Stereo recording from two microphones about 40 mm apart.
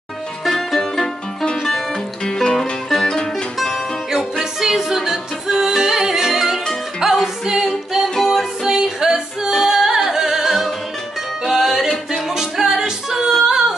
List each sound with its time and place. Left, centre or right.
0.5 s music: centre
2.2 s music: centre
4.1 s music: centre
8.6 s female singing: centre
9.5 s music: centre